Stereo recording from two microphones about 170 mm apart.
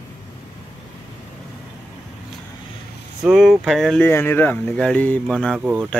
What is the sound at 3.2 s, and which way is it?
Speech, 5° right (ahead or behind).